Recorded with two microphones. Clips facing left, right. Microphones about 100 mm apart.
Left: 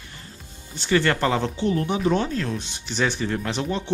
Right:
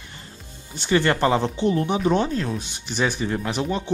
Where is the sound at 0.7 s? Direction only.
20° right (ahead or behind).